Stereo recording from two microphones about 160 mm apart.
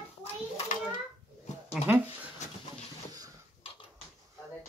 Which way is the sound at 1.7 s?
10° right (ahead or behind).